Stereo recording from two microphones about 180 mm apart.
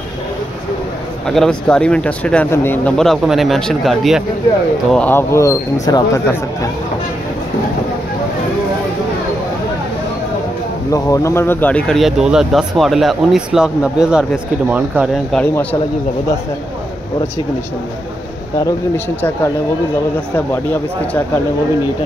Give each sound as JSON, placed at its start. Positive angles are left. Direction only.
{"t": 1.2, "sound": "speech", "side_deg": 0}
{"t": 4.9, "sound": "speech", "side_deg": 10}
{"t": 10.9, "sound": "speech", "side_deg": 15}
{"t": 15.3, "sound": "speech", "side_deg": 10}
{"t": 20.3, "sound": "speech", "side_deg": 10}